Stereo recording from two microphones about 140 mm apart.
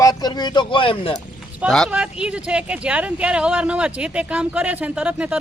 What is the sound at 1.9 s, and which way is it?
Speech, 10° right (ahead or behind).